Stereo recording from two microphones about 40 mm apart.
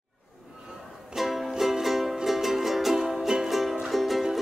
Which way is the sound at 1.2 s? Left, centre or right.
Centre.